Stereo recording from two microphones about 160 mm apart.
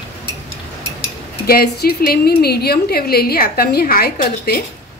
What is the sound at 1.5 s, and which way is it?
A woman's voice, 70° left (ahead or behind).